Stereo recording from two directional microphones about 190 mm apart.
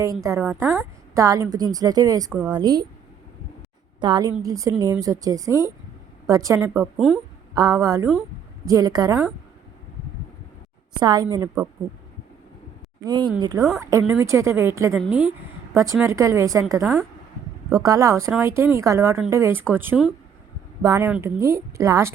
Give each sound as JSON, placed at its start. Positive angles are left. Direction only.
{"t": 0.0, "sound": "a woman's voice", "side_deg": -15}
{"t": 4.0, "sound": "a woman's voice", "side_deg": -20}
{"t": 6.9, "sound": "speech", "side_deg": -5}
{"t": 7.5, "sound": "a woman's voice", "side_deg": -20}
{"t": 11.0, "sound": "a woman's voice", "side_deg": -20}
{"t": 13.0, "sound": "a woman's voice", "side_deg": -20}
{"t": 17.8, "sound": "a woman's voice", "side_deg": -20}